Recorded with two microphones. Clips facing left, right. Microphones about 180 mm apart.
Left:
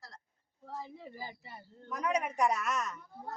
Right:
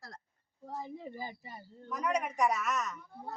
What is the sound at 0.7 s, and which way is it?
Speech, 15° right (ahead or behind).